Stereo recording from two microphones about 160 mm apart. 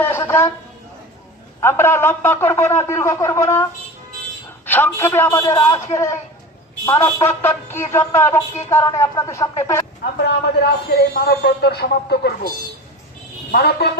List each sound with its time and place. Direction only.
0.0 s a sound: 15° left (ahead or behind)
1.6 s a man's voice: 15° left (ahead or behind)
10.2 s speech: 85° left
13.5 s speech: 75° left (ahead or behind)